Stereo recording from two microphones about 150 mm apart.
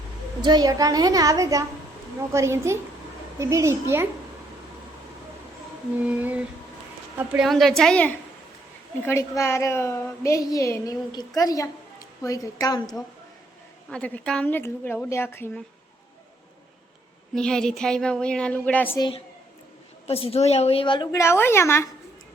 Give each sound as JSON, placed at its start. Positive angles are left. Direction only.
{"t": 0.4, "sound": "a woman's voice", "side_deg": -25}
{"t": 6.1, "sound": "a sound", "side_deg": -10}
{"t": 7.2, "sound": "a woman's voice", "side_deg": -5}
{"t": 9.0, "sound": "a woman's voice", "side_deg": 15}
{"t": 13.9, "sound": "a woman's voice", "side_deg": 5}
{"t": 17.3, "sound": "a woman's voice", "side_deg": 5}
{"t": 18.9, "sound": "a woman's voice", "side_deg": 30}
{"t": 20.1, "sound": "a woman's voice", "side_deg": 40}
{"t": 21.2, "sound": "a woman's voice", "side_deg": 15}